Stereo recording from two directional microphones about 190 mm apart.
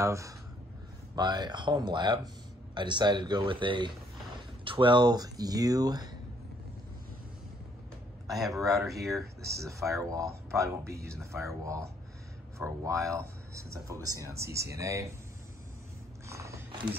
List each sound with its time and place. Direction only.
0.0 s speech: 15° right (ahead or behind)
8.3 s a man's voice: centre (ahead or behind)
9.5 s speech: 15° right (ahead or behind)
16.3 s biting: 15° right (ahead or behind)